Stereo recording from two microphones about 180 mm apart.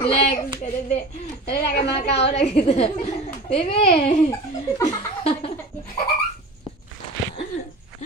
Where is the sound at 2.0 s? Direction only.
35° left (ahead or behind).